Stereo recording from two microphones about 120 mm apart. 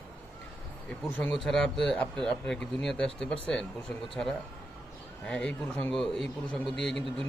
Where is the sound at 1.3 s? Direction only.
5° left (ahead or behind).